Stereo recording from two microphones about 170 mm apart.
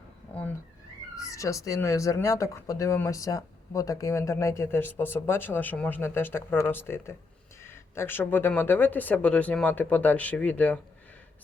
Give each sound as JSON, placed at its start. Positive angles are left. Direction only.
{"t": 1.1, "sound": "speech", "side_deg": 20}